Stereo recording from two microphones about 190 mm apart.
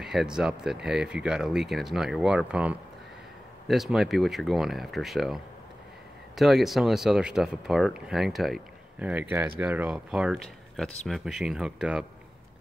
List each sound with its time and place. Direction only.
0.0 s speech: centre (ahead or behind)